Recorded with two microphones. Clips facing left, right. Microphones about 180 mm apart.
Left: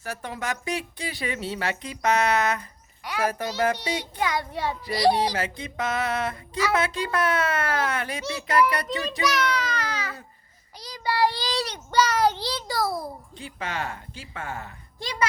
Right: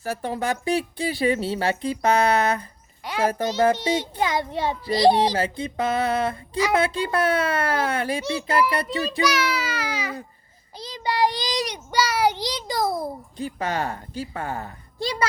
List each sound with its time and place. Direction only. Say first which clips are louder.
0.0 s a child's voice: right 6 dB; 35° right (ahead or behind)
9.2 s a child's voice: even; 5° right (ahead or behind)
10.8 s a child's voice: right 1 dB; 25° right (ahead or behind)
13.3 s speech: right 6 dB; 40° right (ahead or behind)